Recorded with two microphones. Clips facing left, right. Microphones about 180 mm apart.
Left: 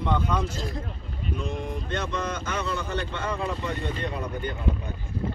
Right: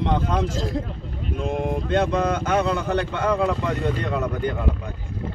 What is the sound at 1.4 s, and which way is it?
Speech, 55° right (ahead or behind).